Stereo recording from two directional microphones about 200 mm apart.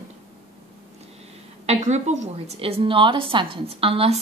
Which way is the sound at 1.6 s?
35° right (ahead or behind).